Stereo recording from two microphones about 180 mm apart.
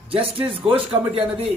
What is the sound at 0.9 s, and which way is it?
Speech, 30° right (ahead or behind).